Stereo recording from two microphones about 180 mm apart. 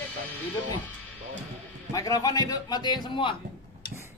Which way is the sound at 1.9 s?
20° left (ahead or behind).